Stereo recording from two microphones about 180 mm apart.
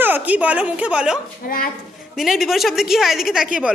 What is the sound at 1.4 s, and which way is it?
Speech, 55° left (ahead or behind).